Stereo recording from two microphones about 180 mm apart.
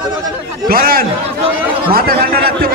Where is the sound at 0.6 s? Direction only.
55° right (ahead or behind).